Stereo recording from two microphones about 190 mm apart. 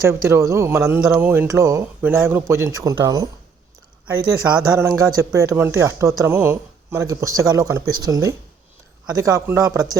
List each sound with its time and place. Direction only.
0.1 s speech: 15° right (ahead or behind)
4.3 s speech: 15° right (ahead or behind)